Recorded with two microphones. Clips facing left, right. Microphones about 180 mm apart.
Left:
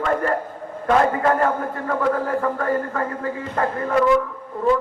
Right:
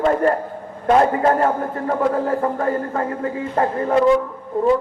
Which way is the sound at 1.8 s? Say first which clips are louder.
Right 2 dB; 25° right (ahead or behind).